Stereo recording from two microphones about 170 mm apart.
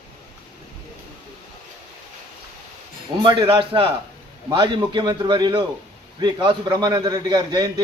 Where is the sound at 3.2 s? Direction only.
30° right (ahead or behind).